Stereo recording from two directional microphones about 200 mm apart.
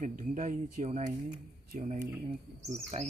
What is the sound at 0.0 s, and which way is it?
Speech, 40° right (ahead or behind).